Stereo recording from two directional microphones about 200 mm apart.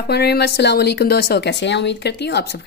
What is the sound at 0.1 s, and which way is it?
Speech, 55° left (ahead or behind).